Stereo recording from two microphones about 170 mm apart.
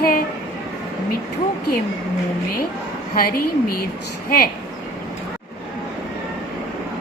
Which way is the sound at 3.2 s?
60° left (ahead or behind).